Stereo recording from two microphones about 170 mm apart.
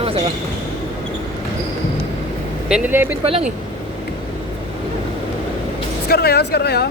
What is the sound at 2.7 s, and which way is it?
Speech, 10° right (ahead or behind).